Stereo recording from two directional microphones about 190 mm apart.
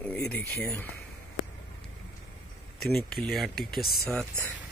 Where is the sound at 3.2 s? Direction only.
Centre (ahead or behind).